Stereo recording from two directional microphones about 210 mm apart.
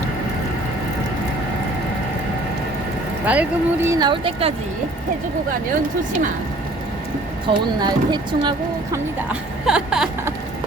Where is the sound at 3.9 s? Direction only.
20° right (ahead or behind).